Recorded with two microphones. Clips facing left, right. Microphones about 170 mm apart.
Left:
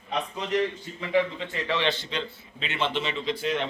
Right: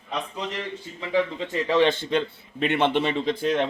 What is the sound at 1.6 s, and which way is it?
A man's voice, 45° right (ahead or behind).